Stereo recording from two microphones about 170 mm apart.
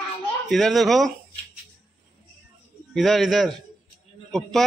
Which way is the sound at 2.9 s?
Centre (ahead or behind).